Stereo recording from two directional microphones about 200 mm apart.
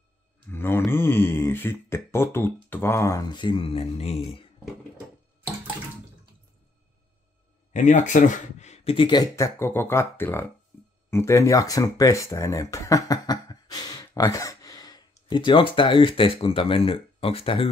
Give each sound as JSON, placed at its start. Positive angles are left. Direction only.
{"t": 0.5, "sound": "speech", "side_deg": 10}
{"t": 7.7, "sound": "speech", "side_deg": 35}